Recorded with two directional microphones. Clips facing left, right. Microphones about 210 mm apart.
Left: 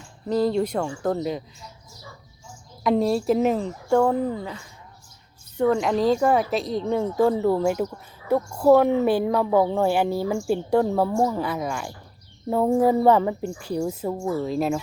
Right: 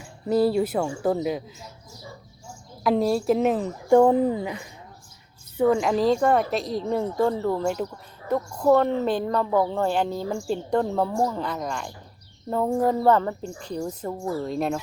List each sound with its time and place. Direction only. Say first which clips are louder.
0.0 s a woman's voice: right 1 dB; 10° right (ahead or behind)
2.8 s a woman's voice: left 1 dB; centre (ahead or behind)
3.8 s a woman's voice: right 4 dB; 15° right (ahead or behind)
5.5 s a woman's voice: even; centre (ahead or behind)